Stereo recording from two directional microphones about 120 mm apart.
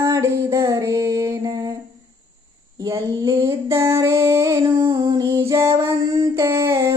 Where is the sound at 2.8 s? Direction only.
30° right (ahead or behind).